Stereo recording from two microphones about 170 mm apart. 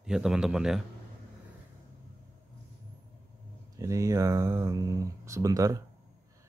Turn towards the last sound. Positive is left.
turn(degrees=-20)  # may be behind; listen again after turning